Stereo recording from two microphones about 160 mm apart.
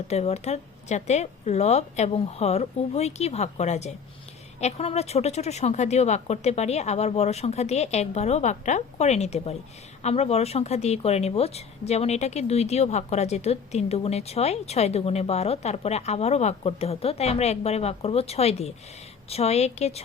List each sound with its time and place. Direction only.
0.1 s a woman's voice: 45° left (ahead or behind)